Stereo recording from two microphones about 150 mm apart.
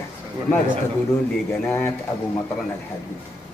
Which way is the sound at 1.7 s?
15° left (ahead or behind).